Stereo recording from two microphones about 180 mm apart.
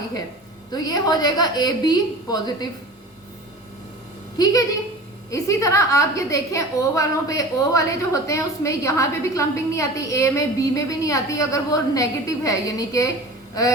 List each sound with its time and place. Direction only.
0.7 s a woman's voice: 20° left (ahead or behind)
4.4 s a woman's voice: 20° left (ahead or behind)